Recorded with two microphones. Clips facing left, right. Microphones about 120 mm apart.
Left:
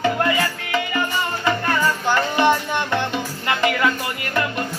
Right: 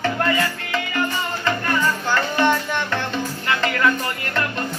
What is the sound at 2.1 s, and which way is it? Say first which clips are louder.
Music: left 2 dB; 15° left (ahead or behind).